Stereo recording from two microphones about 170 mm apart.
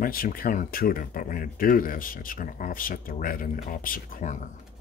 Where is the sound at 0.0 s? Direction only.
60° left (ahead or behind).